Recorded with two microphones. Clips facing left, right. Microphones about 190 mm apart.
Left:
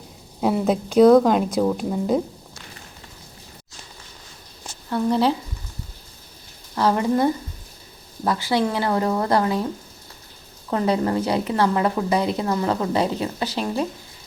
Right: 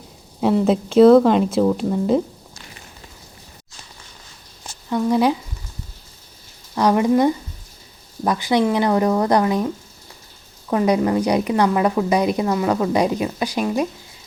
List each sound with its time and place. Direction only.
0.4 s speech: centre (ahead or behind)
5.0 s a woman's voice: 15° right (ahead or behind)
6.7 s a woman's voice: 15° right (ahead or behind)
10.7 s a woman's voice: 15° right (ahead or behind)